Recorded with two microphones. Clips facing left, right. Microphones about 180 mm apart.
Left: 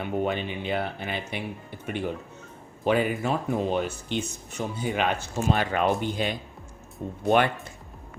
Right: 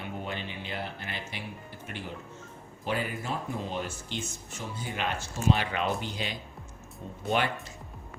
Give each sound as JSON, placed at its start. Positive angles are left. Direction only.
{"t": 0.0, "sound": "speech", "side_deg": 60}
{"t": 2.8, "sound": "speech", "side_deg": 60}